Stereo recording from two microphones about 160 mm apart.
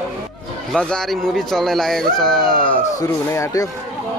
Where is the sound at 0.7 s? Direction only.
5° left (ahead or behind).